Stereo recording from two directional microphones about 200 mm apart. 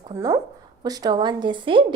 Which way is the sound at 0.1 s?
15° right (ahead or behind).